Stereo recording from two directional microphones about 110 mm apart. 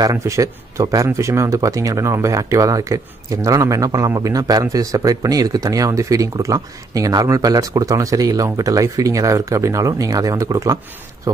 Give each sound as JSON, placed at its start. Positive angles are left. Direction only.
{"t": 0.0, "sound": "speech", "side_deg": -30}